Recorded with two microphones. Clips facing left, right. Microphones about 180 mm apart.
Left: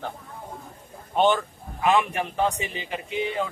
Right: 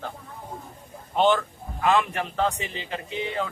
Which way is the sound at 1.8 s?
15° left (ahead or behind).